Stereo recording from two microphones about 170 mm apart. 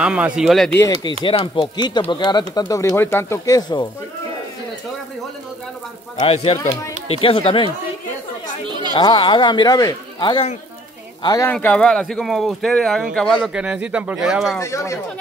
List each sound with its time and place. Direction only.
0.0 s speech: 5° right (ahead or behind)
0.7 s speech: 20° left (ahead or behind)
6.1 s speech: 35° left (ahead or behind)
8.9 s speech: 30° left (ahead or behind)
11.4 s speech: 10° left (ahead or behind)
13.4 s speech: 5° right (ahead or behind)
14.6 s speech: 15° left (ahead or behind)